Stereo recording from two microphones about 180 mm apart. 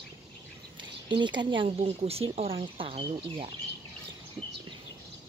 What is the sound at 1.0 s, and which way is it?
Speech, 25° right (ahead or behind).